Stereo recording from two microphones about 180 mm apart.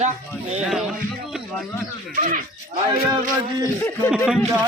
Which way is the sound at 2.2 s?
50° right (ahead or behind).